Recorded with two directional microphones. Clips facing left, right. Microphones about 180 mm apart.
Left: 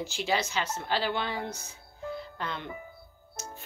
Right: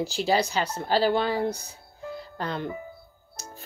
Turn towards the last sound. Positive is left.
turn(degrees=-35)  # may be behind; listen again after turning